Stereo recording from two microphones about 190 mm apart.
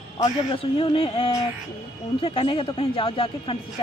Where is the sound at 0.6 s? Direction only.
30° left (ahead or behind).